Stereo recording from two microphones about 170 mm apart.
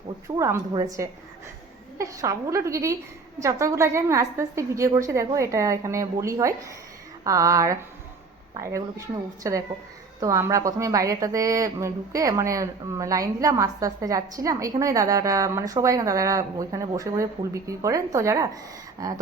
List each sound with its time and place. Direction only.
0.3 s a woman's voice: 15° right (ahead or behind)